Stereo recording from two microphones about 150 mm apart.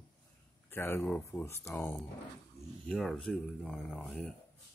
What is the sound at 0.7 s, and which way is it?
Speech, 15° left (ahead or behind).